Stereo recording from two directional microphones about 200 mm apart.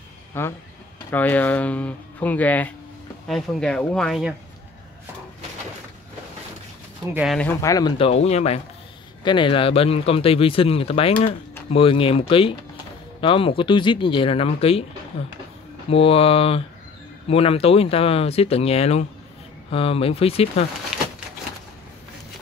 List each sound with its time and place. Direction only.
0.3 s speech: 10° left (ahead or behind)
7.2 s speech: centre (ahead or behind)
7.4 s speech: 15° left (ahead or behind)
15.9 s speech: 30° left (ahead or behind)
20.9 s a sound: 5° right (ahead or behind)